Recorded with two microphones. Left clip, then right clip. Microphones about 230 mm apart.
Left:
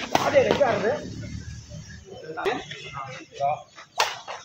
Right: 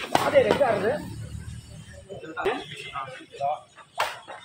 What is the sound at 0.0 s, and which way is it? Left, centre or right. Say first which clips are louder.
Speech: even; centre.